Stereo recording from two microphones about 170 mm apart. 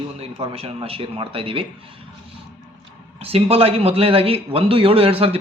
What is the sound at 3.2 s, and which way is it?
Speech, 35° right (ahead or behind).